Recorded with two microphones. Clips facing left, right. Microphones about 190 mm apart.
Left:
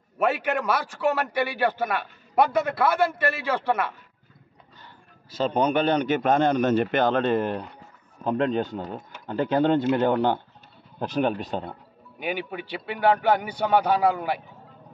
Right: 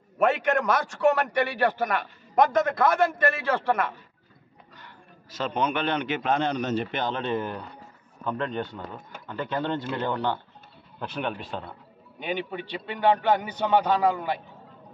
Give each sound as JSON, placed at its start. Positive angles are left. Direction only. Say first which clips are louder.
{"t": 0.2, "sound": "a man's voice", "louder": "right 1 dB", "side_deg": 5}
{"t": 4.7, "sound": "a man's voice", "louder": "right 1 dB", "side_deg": 30}
{"t": 8.2, "sound": "speech", "louder": "left 6 dB", "side_deg": 35}
{"t": 12.2, "sound": "a man's voice", "louder": "left 1 dB", "side_deg": 10}